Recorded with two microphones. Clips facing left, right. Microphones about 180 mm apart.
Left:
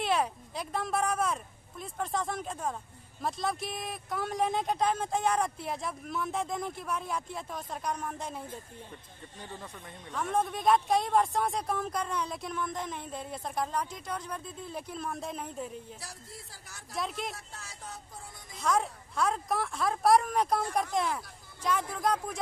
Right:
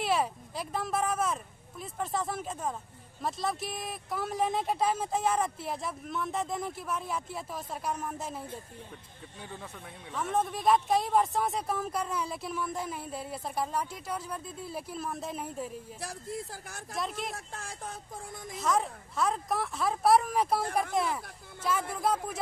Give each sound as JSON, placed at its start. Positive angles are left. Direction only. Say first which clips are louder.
{"t": 0.0, "sound": "a woman's voice", "louder": "even", "side_deg": -5}
{"t": 10.1, "sound": "a woman's voice", "louder": "even", "side_deg": 0}
{"t": 16.9, "sound": "a woman's voice", "louder": "even", "side_deg": 0}
{"t": 17.3, "sound": "speech", "louder": "right 4 dB", "side_deg": -50}
{"t": 18.5, "sound": "a woman's voice", "louder": "even", "side_deg": 0}